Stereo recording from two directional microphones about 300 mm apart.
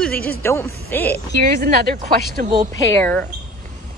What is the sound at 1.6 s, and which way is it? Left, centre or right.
Speech, right.